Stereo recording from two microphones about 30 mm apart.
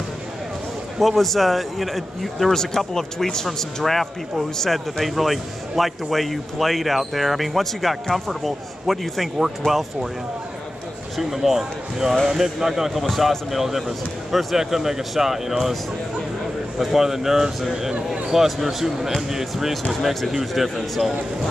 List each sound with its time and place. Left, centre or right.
0.9 s speech: centre
2.5 s speech: centre
3.5 s speech: centre
9.6 s speech: centre
11.1 s speech: centre
16.9 s speech: centre
19.9 s speech: centre